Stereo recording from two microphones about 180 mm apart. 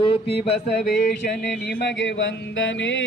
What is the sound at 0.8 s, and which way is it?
Mantra, 65° left (ahead or behind).